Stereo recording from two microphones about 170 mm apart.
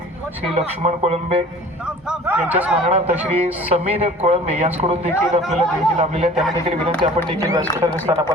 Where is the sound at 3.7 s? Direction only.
40° right (ahead or behind).